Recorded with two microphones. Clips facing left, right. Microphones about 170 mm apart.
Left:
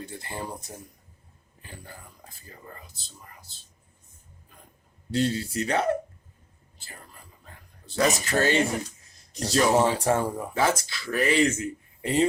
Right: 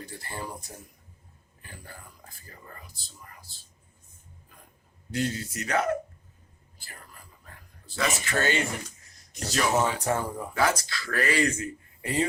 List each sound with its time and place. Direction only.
0.0 s speech: 20° left (ahead or behind)
1.6 s speech: 20° left (ahead or behind)
5.1 s speech: 30° left (ahead or behind)
7.9 s speech: 40° left (ahead or behind)